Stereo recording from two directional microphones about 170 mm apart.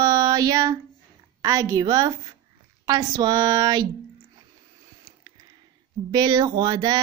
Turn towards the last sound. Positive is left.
turn(degrees=-25)  # may be behind; listen again after turning